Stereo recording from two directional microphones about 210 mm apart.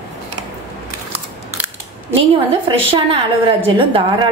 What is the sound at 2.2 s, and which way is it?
A woman's voice, 25° right (ahead or behind).